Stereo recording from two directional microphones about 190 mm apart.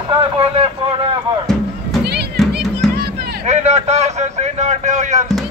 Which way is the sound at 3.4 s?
35° right (ahead or behind).